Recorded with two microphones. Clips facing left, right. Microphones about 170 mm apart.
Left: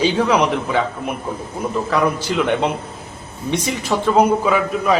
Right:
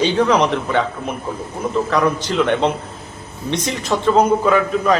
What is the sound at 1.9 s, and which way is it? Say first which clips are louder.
A man's voice: left 1 dB; 10° left (ahead or behind).